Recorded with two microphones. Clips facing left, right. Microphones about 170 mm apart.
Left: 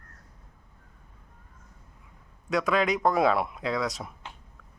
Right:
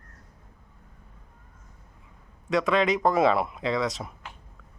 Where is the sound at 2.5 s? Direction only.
Centre (ahead or behind).